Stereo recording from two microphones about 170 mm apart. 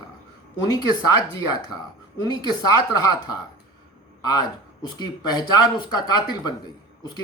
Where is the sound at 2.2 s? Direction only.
25° left (ahead or behind).